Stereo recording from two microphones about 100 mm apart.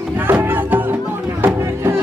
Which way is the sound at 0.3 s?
20° right (ahead or behind).